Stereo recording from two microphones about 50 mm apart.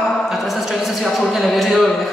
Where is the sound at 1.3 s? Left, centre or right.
Centre.